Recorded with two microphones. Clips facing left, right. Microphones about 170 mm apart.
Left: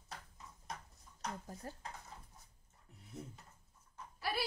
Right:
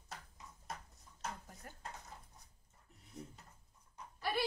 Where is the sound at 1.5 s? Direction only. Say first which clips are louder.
Left 7 dB; 30° left (ahead or behind).